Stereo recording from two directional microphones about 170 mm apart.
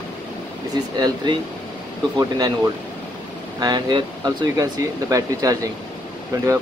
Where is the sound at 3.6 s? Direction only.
25° right (ahead or behind).